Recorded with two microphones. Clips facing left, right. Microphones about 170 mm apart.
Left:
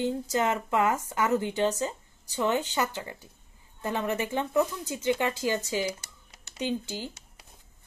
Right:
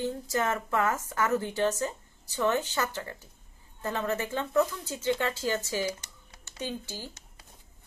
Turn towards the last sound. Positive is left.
turn(degrees=15)  # may be behind; listen again after turning